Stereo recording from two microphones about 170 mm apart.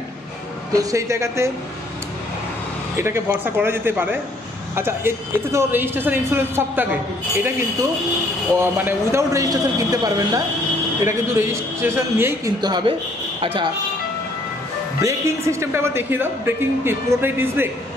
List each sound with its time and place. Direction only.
0.7 s a woman's voice: 15° right (ahead or behind)
3.0 s a woman's voice: 15° right (ahead or behind)
8.5 s a man's voice: 15° right (ahead or behind)
12.6 s a man's voice: 25° right (ahead or behind)
15.0 s a woman's voice: 15° right (ahead or behind)